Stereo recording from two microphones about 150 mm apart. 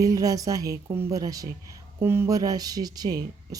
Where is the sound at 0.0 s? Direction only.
20° right (ahead or behind).